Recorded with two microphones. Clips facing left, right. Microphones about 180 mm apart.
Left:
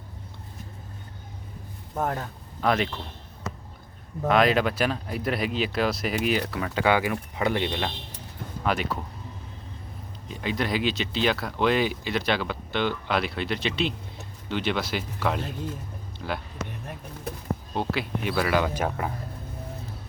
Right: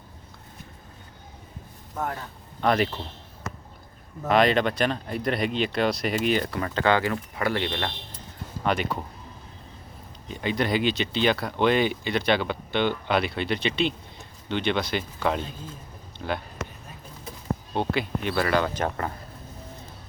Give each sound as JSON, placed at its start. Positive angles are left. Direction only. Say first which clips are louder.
{"t": 2.6, "sound": "speech", "louder": "right 2 dB", "side_deg": 0}
{"t": 4.3, "sound": "speech", "louder": "even", "side_deg": 0}
{"t": 8.6, "sound": "speech", "louder": "right 1 dB", "side_deg": 0}
{"t": 10.2, "sound": "speech", "louder": "right 2 dB", "side_deg": 0}
{"t": 17.7, "sound": "speech", "louder": "right 2 dB", "side_deg": 0}